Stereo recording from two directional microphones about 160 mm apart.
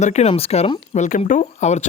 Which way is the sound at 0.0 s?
45° left (ahead or behind).